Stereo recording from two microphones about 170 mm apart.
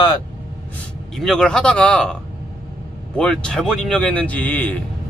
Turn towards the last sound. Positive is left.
turn(degrees=10)  # may be behind; listen again after turning